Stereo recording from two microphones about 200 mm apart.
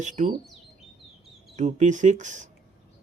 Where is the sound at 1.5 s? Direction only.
35° right (ahead or behind).